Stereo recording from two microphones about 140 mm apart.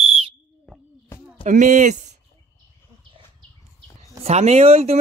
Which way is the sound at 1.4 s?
60° right (ahead or behind).